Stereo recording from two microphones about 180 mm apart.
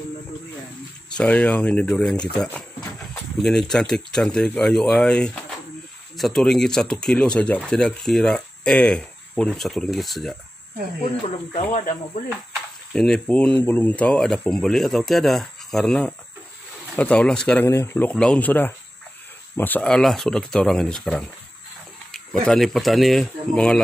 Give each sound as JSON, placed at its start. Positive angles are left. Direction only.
{"t": 1.1, "sound": "speech", "side_deg": 5}
{"t": 11.5, "sound": "speech", "side_deg": 40}
{"t": 12.9, "sound": "speech", "side_deg": 5}